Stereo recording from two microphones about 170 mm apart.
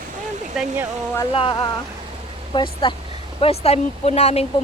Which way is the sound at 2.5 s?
30° left (ahead or behind).